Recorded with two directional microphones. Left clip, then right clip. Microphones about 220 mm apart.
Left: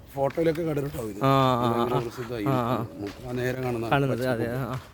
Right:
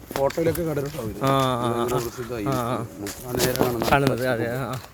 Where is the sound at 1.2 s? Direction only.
15° left (ahead or behind).